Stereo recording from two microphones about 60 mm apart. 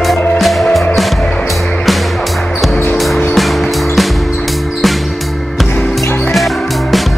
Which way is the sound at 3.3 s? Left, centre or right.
Centre.